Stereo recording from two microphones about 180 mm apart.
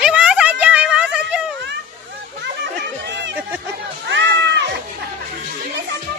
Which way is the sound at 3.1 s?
75° right (ahead or behind).